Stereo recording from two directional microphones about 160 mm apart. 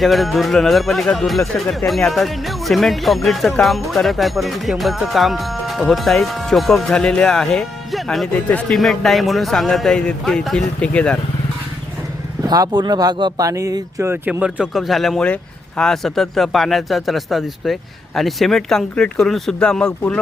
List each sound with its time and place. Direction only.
0.0 s speech: centre (ahead or behind)
12.4 s speech: 25° right (ahead or behind); by 20.1 s 5° left (ahead or behind)